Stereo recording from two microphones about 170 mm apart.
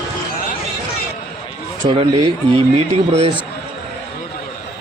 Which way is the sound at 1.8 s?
30° right (ahead or behind).